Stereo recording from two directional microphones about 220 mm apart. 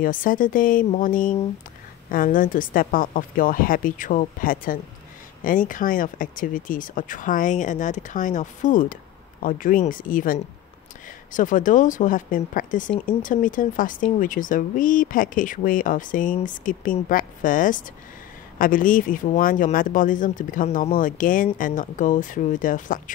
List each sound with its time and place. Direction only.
0.0 s speech: 40° left (ahead or behind)